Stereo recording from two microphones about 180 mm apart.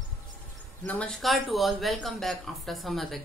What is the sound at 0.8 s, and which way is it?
Speech, 5° left (ahead or behind).